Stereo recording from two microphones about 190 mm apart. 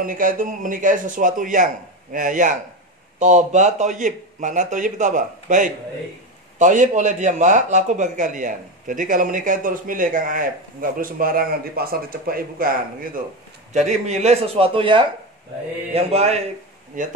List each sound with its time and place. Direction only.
0.0 s speech: 45° right (ahead or behind)
13.7 s speech: 35° right (ahead or behind)